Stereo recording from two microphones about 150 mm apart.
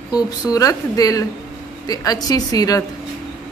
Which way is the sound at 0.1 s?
25° left (ahead or behind).